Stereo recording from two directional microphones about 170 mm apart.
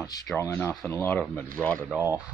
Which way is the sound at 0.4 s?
15° left (ahead or behind).